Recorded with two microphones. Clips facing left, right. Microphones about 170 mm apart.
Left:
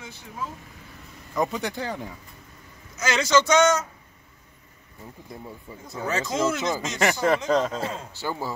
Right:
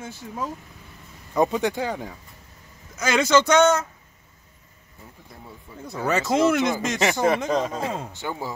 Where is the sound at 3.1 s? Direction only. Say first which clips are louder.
Right 2 dB; 55° right (ahead or behind).